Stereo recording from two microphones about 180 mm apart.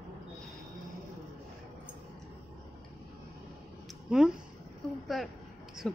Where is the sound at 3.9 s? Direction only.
5° right (ahead or behind).